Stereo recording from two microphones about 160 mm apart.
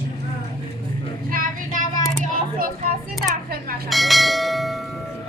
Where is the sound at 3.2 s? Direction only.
65° right (ahead or behind).